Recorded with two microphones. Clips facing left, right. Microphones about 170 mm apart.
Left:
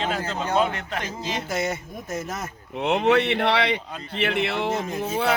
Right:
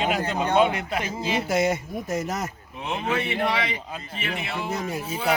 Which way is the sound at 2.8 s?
70° left (ahead or behind).